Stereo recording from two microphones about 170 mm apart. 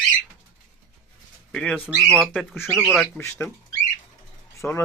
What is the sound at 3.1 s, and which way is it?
Speech, 15° left (ahead or behind).